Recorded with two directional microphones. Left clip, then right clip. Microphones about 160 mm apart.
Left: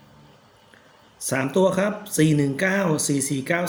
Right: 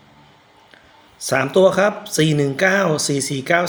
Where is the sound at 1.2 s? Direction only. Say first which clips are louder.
Right 7 dB; 15° right (ahead or behind).